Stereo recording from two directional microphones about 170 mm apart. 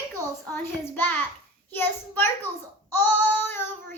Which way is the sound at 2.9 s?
10° left (ahead or behind).